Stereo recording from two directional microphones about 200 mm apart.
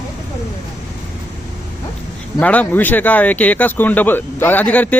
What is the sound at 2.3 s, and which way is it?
Speech, 5° left (ahead or behind).